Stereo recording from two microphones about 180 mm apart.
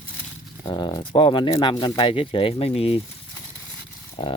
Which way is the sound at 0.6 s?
25° left (ahead or behind).